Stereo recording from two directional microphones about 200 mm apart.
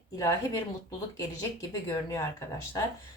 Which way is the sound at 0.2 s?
20° left (ahead or behind).